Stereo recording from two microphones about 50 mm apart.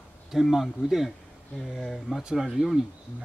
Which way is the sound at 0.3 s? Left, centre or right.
Centre.